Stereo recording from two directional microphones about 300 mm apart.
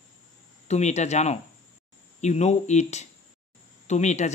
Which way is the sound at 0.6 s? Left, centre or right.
Left.